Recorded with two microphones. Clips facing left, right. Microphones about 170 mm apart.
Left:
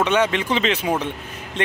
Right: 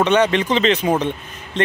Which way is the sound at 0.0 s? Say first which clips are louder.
Right 3 dB; 5° left (ahead or behind).